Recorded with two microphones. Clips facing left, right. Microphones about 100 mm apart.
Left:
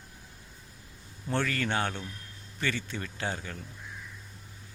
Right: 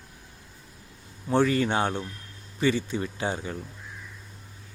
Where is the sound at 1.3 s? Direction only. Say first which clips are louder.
Right 7 dB; 15° right (ahead or behind).